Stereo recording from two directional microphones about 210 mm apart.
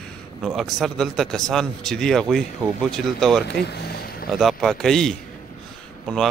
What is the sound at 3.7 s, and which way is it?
Vehicle, 45° left (ahead or behind).